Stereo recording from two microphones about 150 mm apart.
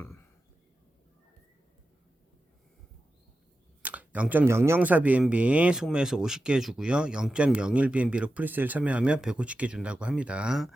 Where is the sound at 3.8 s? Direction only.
10° right (ahead or behind).